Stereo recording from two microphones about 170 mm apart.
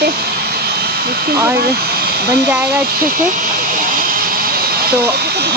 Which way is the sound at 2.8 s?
55° right (ahead or behind).